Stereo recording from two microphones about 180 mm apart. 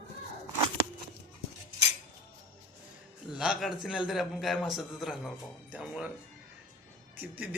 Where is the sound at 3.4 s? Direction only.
Centre (ahead or behind).